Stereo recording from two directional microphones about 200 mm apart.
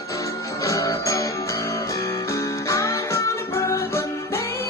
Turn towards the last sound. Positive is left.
turn(degrees=10)  # may be behind; listen again after turning